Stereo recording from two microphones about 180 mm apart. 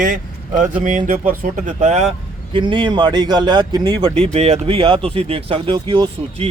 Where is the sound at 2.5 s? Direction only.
30° right (ahead or behind).